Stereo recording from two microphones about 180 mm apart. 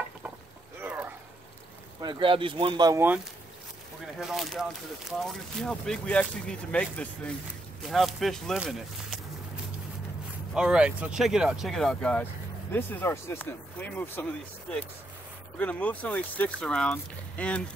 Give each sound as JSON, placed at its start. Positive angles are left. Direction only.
{"t": 0.7, "sound": "a sound", "side_deg": -10}
{"t": 2.0, "sound": "speech", "side_deg": -25}
{"t": 4.2, "sound": "speech", "side_deg": 0}
{"t": 10.5, "sound": "speech", "side_deg": -5}
{"t": 15.5, "sound": "speech", "side_deg": 5}